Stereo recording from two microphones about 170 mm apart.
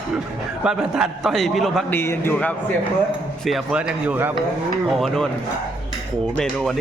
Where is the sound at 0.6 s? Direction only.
5° right (ahead or behind).